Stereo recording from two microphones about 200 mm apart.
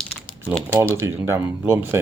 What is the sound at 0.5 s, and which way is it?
Speech, 10° left (ahead or behind).